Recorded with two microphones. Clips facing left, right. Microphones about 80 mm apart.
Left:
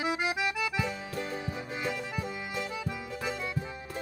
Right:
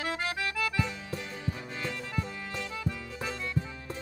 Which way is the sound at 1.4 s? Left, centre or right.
Centre.